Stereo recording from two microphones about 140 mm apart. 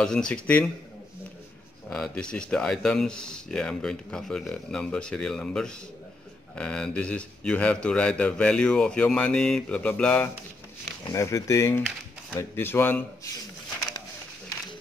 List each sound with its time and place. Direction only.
0.0 s a man's voice: 5° left (ahead or behind)
1.9 s a man's voice: 5° left (ahead or behind)
11.1 s a man's voice: 25° left (ahead or behind)